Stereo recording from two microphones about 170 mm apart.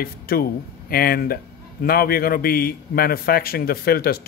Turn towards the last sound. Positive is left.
turn(degrees=65)  # may be behind; listen again after turning